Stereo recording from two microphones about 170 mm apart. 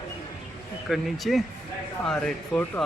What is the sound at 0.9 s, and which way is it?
Speech, centre (ahead or behind).